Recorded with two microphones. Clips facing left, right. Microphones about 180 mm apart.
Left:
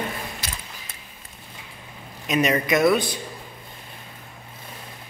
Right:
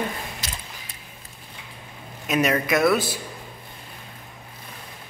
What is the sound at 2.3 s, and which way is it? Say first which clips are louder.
Speech: left 1 dB; 5° right (ahead or behind).